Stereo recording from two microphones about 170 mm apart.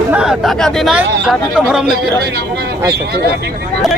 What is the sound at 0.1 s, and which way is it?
A man's voice, 5° right (ahead or behind).